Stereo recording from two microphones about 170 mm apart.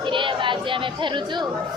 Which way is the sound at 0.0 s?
30° right (ahead or behind).